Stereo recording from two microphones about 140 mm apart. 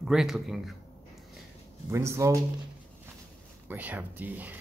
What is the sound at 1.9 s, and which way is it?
Speech, 20° right (ahead or behind).